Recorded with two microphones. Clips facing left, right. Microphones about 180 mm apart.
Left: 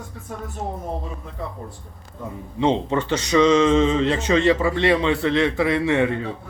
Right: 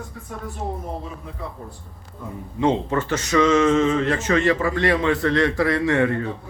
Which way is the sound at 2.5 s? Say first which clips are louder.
Even; 20° left (ahead or behind).